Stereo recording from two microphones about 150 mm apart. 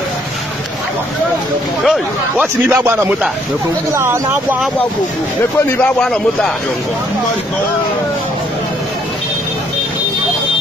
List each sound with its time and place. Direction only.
1.9 s speech: 10° right (ahead or behind)
5.9 s a man's voice: 5° left (ahead or behind)